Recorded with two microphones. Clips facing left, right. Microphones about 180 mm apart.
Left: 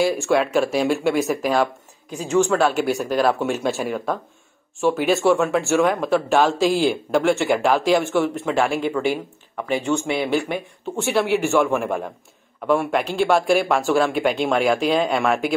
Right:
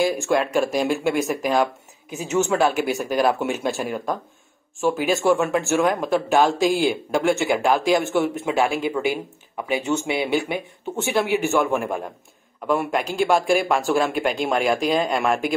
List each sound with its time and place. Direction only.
0.0 s speech: centre (ahead or behind)
10.2 s speech: 5° right (ahead or behind)